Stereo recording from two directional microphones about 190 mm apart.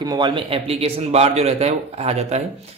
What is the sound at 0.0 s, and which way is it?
A man's voice, 20° right (ahead or behind).